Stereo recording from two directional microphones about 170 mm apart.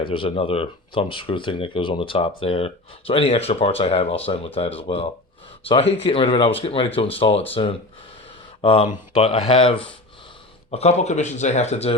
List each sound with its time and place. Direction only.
0.0 s speech: 30° left (ahead or behind)